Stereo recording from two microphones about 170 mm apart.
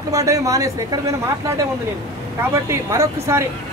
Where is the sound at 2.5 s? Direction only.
15° right (ahead or behind).